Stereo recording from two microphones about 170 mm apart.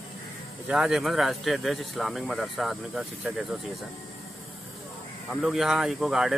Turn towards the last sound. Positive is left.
turn(degrees=0)  # may be behind; listen again after turning